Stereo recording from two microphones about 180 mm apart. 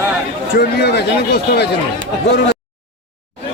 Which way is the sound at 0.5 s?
65° left (ahead or behind).